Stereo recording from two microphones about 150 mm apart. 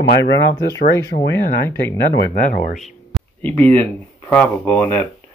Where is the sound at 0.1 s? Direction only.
90° left; by 2.7 s 70° left (ahead or behind).